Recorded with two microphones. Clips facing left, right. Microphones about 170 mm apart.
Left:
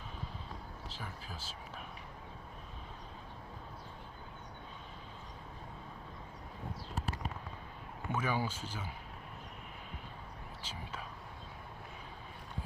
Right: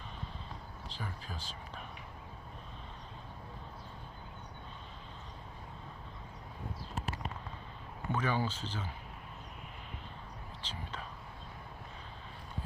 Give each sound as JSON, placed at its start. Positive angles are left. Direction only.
{"t": 0.9, "sound": "speech", "side_deg": 5}
{"t": 8.1, "sound": "speech", "side_deg": 10}
{"t": 10.6, "sound": "whispering", "side_deg": 10}